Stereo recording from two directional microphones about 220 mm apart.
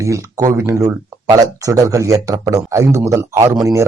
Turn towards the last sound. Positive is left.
turn(degrees=-15)  # may be behind; listen again after turning